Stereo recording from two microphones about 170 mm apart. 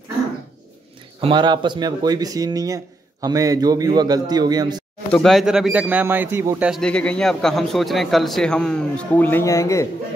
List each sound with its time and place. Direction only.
1.2 s speech: 25° right (ahead or behind)
5.1 s speech: centre (ahead or behind)
6.7 s a man's voice: 5° left (ahead or behind)